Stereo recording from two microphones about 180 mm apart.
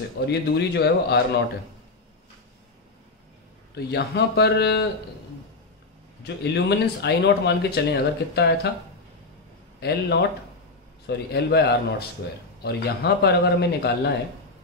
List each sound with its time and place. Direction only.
0.3 s a man's voice: 65° left (ahead or behind)
3.7 s a man's voice: 65° left (ahead or behind)
6.2 s speech: 65° left (ahead or behind)
9.8 s a man's voice: 65° left (ahead or behind)